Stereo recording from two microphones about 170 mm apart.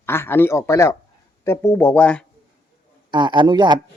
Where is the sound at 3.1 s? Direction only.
25° right (ahead or behind).